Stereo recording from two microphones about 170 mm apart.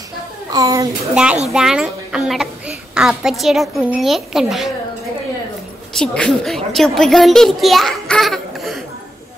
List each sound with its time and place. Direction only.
0.5 s a child's voice: 20° right (ahead or behind)
1.1 s a child's voice: 5° right (ahead or behind)
5.9 s a child's voice: 5° left (ahead or behind)